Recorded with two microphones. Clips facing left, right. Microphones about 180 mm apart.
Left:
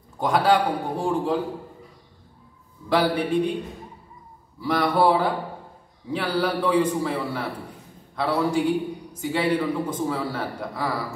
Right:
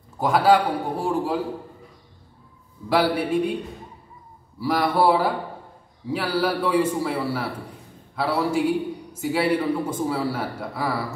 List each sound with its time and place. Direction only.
0.2 s a man's voice: 5° right (ahead or behind)
2.9 s a man's voice: 10° right (ahead or behind)
4.6 s a man's voice: 10° right (ahead or behind)